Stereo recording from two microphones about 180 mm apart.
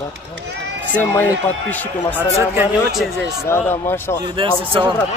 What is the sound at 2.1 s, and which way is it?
Speech, 10° right (ahead or behind).